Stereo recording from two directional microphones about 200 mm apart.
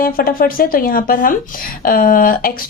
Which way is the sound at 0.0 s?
45° left (ahead or behind).